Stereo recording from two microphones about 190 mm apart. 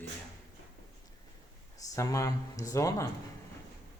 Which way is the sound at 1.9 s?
15° left (ahead or behind).